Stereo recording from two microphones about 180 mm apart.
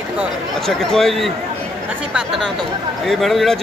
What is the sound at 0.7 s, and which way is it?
A man's voice, centre (ahead or behind).